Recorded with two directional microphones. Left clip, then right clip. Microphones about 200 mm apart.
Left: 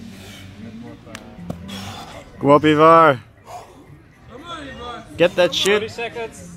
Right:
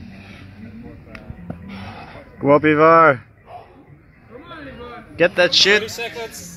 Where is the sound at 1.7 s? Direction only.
25° left (ahead or behind).